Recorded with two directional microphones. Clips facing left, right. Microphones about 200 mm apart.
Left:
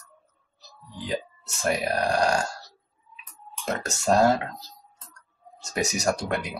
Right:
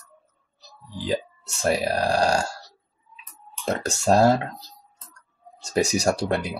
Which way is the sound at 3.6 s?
30° right (ahead or behind).